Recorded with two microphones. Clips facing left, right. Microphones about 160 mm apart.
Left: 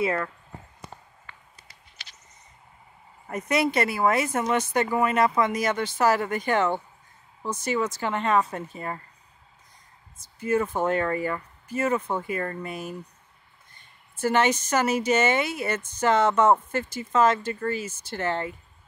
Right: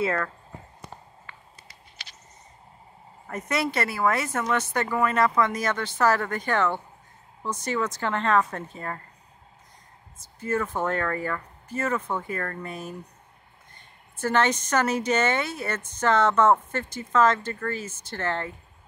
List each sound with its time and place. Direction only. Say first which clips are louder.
0.0 s speech: even; 20° left (ahead or behind)
3.3 s speech: left 3 dB; 15° left (ahead or behind)
10.2 s speech: left 3 dB; 15° left (ahead or behind)
14.1 s speech: left 1 dB; 10° left (ahead or behind)